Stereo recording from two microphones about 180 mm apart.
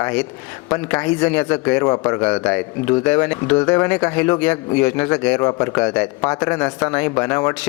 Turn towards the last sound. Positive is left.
turn(degrees=10)  # may be behind; listen again after turning